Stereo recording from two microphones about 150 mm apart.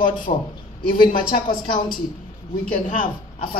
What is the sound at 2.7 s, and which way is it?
Speech, 60° left (ahead or behind).